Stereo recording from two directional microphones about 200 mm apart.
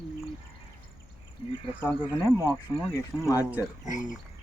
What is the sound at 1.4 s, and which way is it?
Cricket, 25° left (ahead or behind).